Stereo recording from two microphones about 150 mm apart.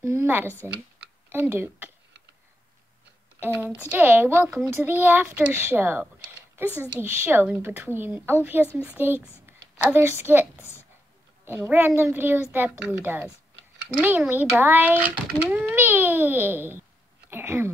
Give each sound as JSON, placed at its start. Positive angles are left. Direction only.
{"t": 0.0, "sound": "a woman's voice", "side_deg": -15}
{"t": 3.3, "sound": "a woman's voice", "side_deg": -15}